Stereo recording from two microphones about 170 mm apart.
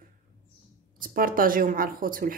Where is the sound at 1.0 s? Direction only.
55° right (ahead or behind).